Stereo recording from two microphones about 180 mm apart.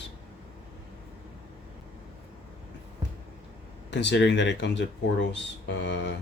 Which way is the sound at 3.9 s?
75° left (ahead or behind).